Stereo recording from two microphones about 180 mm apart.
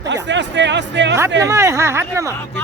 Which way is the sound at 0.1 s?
80° right.